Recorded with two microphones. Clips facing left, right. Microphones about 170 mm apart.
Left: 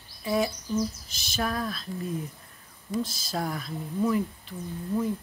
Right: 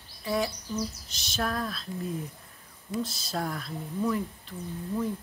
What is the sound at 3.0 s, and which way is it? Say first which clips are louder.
A woman's voice: left 1 dB; centre (ahead or behind).